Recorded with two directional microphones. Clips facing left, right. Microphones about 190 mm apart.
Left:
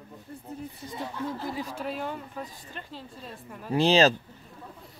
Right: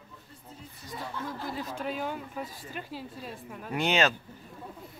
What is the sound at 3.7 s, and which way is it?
Speech, 30° left (ahead or behind).